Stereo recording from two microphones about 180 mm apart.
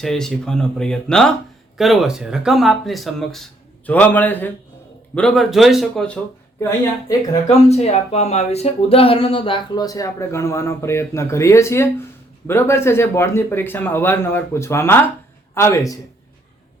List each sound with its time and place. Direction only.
0.0 s speech: centre (ahead or behind)
6.6 s a man's voice: 15° left (ahead or behind)
7.4 s a man's voice: 35° left (ahead or behind); by 16.0 s 15° left (ahead or behind)